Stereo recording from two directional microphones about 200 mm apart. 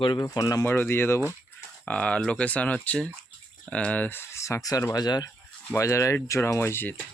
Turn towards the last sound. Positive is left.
turn(degrees=10)  # may be behind; listen again after turning